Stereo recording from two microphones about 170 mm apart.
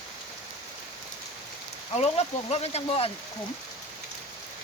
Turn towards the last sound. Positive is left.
turn(degrees=35)  # may be behind; listen again after turning